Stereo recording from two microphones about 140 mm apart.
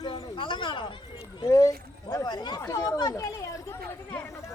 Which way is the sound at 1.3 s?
25° left (ahead or behind).